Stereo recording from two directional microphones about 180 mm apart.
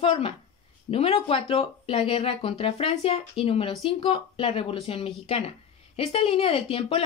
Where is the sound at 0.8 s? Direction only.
35° left (ahead or behind).